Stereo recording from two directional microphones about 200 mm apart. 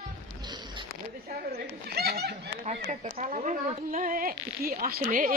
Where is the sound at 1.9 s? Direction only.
55° right (ahead or behind).